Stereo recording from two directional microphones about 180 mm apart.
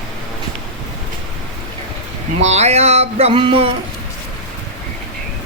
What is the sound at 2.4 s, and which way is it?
Music, 40° right (ahead or behind).